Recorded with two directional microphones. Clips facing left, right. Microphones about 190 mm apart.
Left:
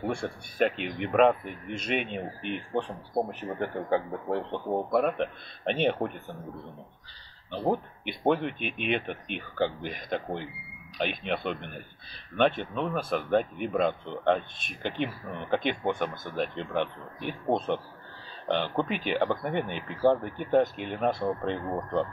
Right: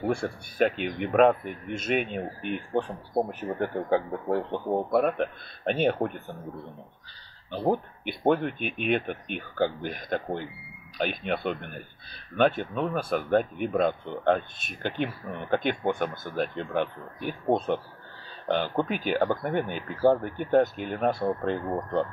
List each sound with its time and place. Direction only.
0.0 s speech: centre (ahead or behind)
7.5 s speech: centre (ahead or behind)